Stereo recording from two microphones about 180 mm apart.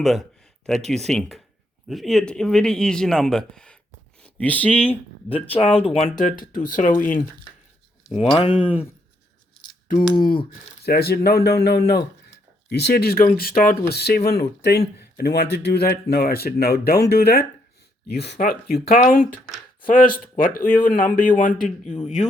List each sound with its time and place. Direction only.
0.0 s a sound: centre (ahead or behind)
0.9 s speech: centre (ahead or behind)
5.5 s speech: 35° left (ahead or behind)
8.4 s speech: 30° left (ahead or behind)
10.8 s speech: 60° left (ahead or behind); by 22.3 s 40° left (ahead or behind)